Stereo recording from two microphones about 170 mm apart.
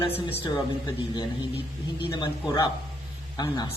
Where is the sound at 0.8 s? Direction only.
20° left (ahead or behind).